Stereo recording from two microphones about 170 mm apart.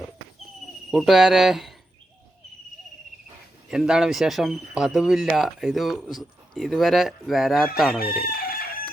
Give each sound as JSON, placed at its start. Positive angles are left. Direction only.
{"t": 0.9, "sound": "speech", "side_deg": 0}
{"t": 3.7, "sound": "speech", "side_deg": -5}
{"t": 8.2, "sound": "crowing", "side_deg": 60}